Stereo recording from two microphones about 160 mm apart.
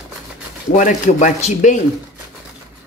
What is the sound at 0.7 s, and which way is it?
Speech, 50° left (ahead or behind).